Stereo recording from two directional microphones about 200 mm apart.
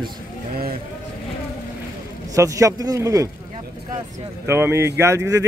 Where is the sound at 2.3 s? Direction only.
15° right (ahead or behind).